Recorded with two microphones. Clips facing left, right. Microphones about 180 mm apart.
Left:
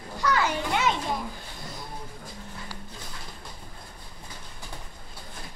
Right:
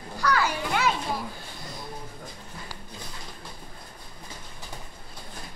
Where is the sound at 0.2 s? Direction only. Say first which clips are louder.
Even; 20° left (ahead or behind).